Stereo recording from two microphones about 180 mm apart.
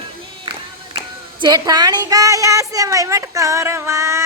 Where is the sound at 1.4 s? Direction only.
20° right (ahead or behind).